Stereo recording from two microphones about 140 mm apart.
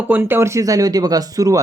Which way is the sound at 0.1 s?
15° right (ahead or behind).